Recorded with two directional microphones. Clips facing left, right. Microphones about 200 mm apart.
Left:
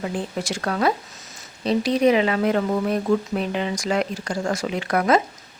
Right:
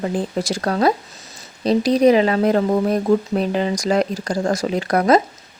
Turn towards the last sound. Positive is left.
turn(degrees=-40)  # may be behind; listen again after turning